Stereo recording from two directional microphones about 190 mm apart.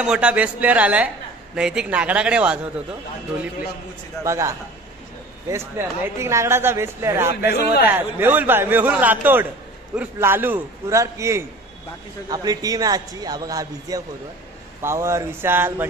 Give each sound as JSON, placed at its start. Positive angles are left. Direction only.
{"t": 0.0, "sound": "a woman's voice", "side_deg": -5}
{"t": 4.2, "sound": "a woman's voice", "side_deg": -15}